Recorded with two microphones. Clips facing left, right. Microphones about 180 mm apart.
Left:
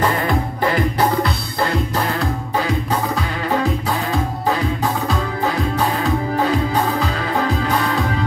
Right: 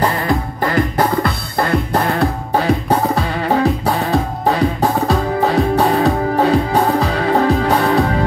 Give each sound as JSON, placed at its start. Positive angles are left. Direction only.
{"t": 0.7, "sound": "music", "side_deg": -50}